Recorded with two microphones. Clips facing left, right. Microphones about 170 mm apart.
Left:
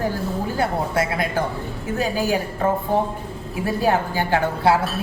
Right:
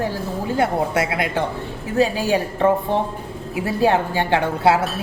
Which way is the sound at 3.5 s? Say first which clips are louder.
Right 2 dB; 25° right (ahead or behind).